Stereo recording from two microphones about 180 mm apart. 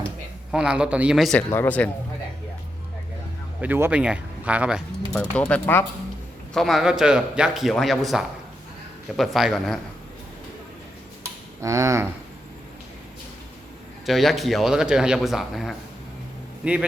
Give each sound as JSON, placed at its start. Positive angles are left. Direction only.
{"t": 0.5, "sound": "a man's voice", "side_deg": -5}
{"t": 1.5, "sound": "speech", "side_deg": 10}
{"t": 3.6, "sound": "speech", "side_deg": -10}
{"t": 5.1, "sound": "a man's voice", "side_deg": 5}
{"t": 11.6, "sound": "speech", "side_deg": -15}
{"t": 14.1, "sound": "a man's voice", "side_deg": 0}